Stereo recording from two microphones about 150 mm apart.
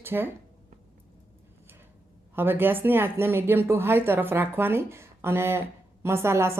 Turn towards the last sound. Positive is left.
turn(degrees=-15)  # may be behind; listen again after turning